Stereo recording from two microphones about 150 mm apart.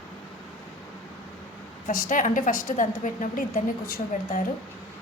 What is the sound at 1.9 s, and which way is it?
A woman's voice, 65° left (ahead or behind).